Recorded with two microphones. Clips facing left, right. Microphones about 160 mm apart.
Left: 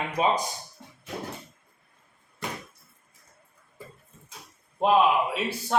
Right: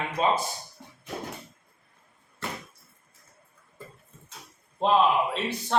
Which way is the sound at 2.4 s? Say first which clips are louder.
Left 1 dB; 15° left (ahead or behind).